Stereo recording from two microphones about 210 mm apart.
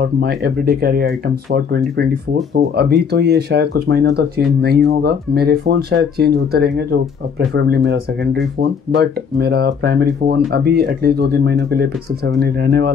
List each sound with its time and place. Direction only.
0.0 s speech: 50° right (ahead or behind)